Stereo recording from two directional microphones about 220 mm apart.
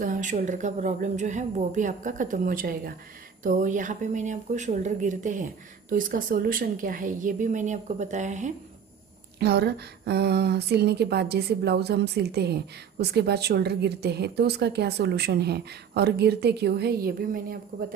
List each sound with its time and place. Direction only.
0.0 s speech: 35° right (ahead or behind)
9.4 s speech: 45° right (ahead or behind)